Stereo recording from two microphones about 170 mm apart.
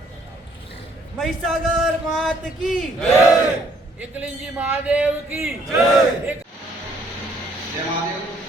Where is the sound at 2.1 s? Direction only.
Centre (ahead or behind).